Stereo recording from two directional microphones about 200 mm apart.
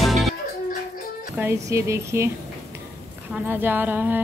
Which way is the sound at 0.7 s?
40° left (ahead or behind).